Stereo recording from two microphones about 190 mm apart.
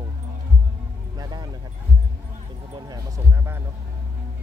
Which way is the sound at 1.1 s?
20° right (ahead or behind).